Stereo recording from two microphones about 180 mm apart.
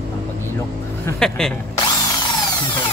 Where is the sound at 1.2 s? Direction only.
5° left (ahead or behind).